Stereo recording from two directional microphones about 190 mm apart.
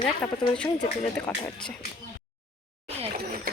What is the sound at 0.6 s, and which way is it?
Speech, 30° left (ahead or behind).